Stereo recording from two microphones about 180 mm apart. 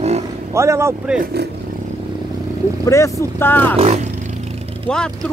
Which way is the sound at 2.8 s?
15° left (ahead or behind).